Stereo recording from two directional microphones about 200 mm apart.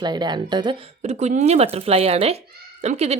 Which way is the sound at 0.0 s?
20° right (ahead or behind).